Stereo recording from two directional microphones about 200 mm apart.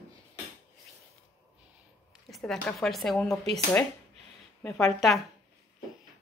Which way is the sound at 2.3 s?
Centre (ahead or behind).